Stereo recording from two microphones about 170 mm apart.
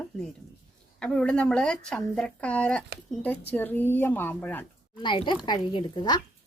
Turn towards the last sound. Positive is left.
turn(degrees=25)  # may be behind; listen again after turning